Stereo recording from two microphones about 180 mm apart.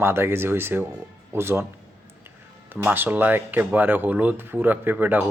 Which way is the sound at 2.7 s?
10° right (ahead or behind).